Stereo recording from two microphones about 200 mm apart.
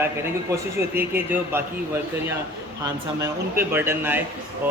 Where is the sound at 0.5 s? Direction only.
10° right (ahead or behind).